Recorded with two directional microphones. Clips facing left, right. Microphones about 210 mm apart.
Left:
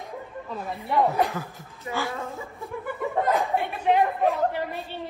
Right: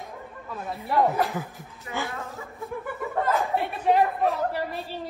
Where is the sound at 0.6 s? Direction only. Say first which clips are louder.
Even; centre (ahead or behind).